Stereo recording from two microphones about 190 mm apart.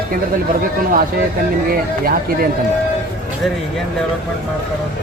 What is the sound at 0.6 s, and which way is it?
Speech, 45° right (ahead or behind).